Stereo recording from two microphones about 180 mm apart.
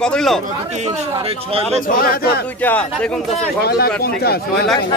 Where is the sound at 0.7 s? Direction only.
40° right (ahead or behind).